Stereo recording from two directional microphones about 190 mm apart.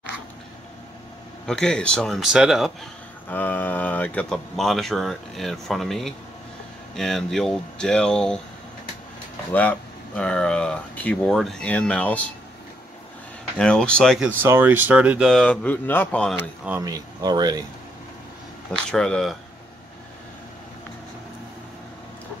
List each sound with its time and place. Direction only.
1.4 s speech: 5° left (ahead or behind)
3.3 s speech: 10° left (ahead or behind)
9.5 s speech: 10° left (ahead or behind)
13.6 s speech: 5° left (ahead or behind)
14.4 s speech: 10° right (ahead or behind); by 16.4 s 5° left (ahead or behind)
16.6 s speech: 15° right (ahead or behind)
18.9 s speech: 5° left (ahead or behind)